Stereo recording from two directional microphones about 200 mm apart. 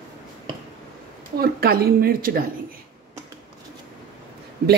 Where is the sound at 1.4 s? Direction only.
50° right (ahead or behind).